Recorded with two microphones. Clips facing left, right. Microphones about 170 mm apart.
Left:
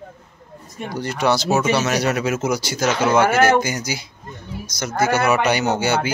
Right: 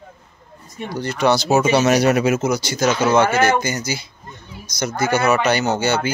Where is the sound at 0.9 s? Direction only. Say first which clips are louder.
Right 2 dB; 10° left (ahead or behind).